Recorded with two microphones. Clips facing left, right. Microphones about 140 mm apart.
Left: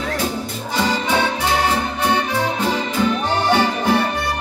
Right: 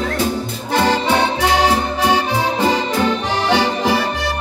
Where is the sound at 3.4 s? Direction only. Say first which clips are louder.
Right 2 dB; 90° right.